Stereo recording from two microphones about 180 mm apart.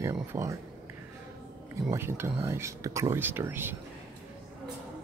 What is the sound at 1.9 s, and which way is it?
Speech, 15° right (ahead or behind).